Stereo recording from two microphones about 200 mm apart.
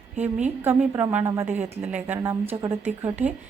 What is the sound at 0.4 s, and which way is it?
A woman's voice, 10° right (ahead or behind).